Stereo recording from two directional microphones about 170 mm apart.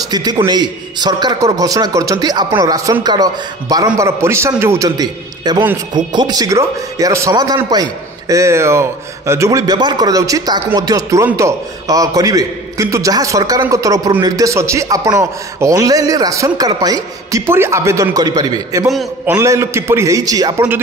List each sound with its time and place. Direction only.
0.1 s a man's voice: 25° right (ahead or behind)